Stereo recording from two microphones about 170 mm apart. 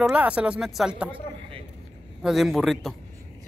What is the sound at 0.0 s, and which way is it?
Speech, 5° right (ahead or behind).